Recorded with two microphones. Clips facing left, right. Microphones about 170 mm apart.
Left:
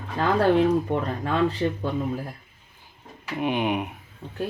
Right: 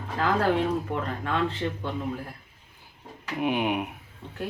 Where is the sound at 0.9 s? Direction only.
35° left (ahead or behind).